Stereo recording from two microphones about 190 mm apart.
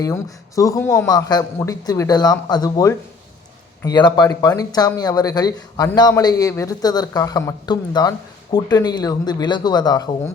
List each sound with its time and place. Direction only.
0.0 s speech: 15° left (ahead or behind)